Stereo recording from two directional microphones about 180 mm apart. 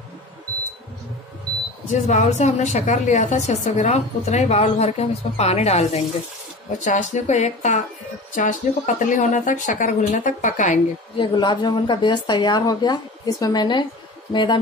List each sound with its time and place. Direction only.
1.9 s a woman's voice: 40° left (ahead or behind)
11.1 s a woman's voice: 25° left (ahead or behind)